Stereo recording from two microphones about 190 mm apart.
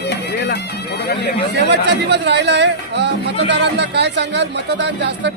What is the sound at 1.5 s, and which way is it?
Speech, 65° right (ahead or behind).